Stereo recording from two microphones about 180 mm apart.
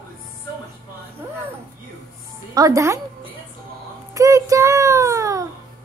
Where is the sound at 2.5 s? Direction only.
20° right (ahead or behind).